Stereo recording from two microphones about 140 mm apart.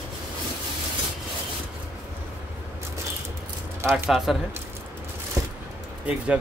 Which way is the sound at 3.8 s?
20° right (ahead or behind).